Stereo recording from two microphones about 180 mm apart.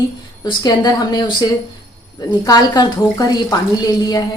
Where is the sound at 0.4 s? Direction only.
25° left (ahead or behind).